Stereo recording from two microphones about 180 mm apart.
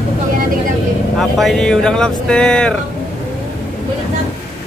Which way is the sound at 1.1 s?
Centre (ahead or behind).